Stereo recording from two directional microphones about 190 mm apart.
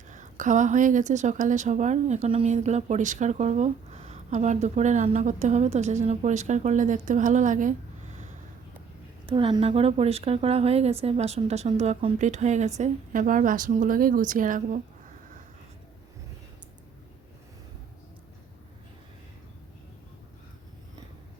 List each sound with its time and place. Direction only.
0.1 s a woman's voice: 40° right (ahead or behind)
9.2 s a woman's voice: 25° right (ahead or behind); by 14.8 s 45° right (ahead or behind)